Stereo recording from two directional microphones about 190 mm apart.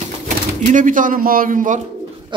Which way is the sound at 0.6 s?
45° right (ahead or behind).